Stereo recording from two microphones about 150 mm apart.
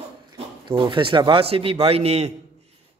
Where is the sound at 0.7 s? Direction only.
35° right (ahead or behind).